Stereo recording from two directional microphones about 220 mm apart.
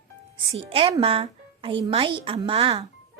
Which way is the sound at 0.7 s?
25° right (ahead or behind).